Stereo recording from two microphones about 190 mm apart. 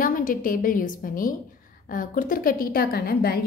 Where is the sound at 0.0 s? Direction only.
45° left (ahead or behind).